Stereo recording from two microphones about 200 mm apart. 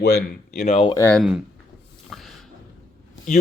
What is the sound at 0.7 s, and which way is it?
Speech, 30° left (ahead or behind).